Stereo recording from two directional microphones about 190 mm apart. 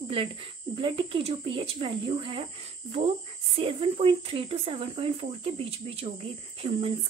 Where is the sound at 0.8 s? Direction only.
25° right (ahead or behind).